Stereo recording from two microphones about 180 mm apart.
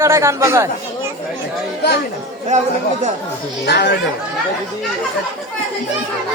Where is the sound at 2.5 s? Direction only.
40° right (ahead or behind).